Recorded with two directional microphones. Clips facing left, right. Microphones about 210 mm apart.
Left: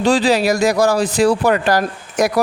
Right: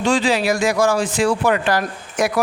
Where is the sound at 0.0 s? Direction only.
35° left (ahead or behind).